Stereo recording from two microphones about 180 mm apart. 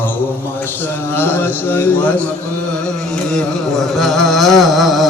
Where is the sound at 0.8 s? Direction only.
10° left (ahead or behind).